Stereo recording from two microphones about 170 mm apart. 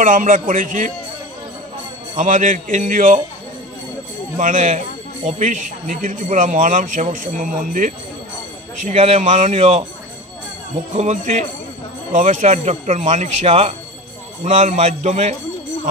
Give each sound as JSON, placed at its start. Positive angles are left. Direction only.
{"t": 0.0, "sound": "speech", "side_deg": -50}
{"t": 2.1, "sound": "speech", "side_deg": -50}
{"t": 4.4, "sound": "speech", "side_deg": -50}
{"t": 8.8, "sound": "a man's voice", "side_deg": -40}
{"t": 11.0, "sound": "speech", "side_deg": -45}